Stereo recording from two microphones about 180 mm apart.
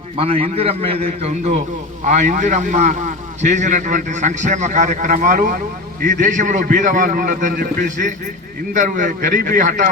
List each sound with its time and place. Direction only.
0.2 s a man's voice: 35° right (ahead or behind)
2.0 s a man's voice: 45° right (ahead or behind)